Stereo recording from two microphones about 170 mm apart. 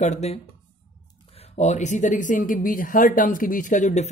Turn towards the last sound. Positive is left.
turn(degrees=45)  # may be behind; listen again after turning